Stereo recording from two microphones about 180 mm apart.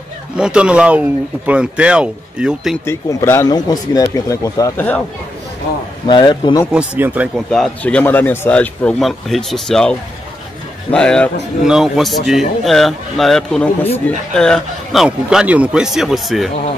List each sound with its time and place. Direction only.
0.4 s speech: 5° right (ahead or behind)
2.8 s speech: 15° left (ahead or behind)
6.0 s speech: 25° left (ahead or behind)
6.7 s speech: 5° right (ahead or behind)